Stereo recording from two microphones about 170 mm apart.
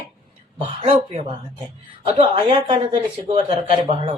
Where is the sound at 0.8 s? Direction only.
40° right (ahead or behind).